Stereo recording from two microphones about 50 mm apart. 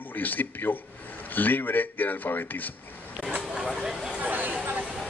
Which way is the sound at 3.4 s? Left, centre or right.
Centre.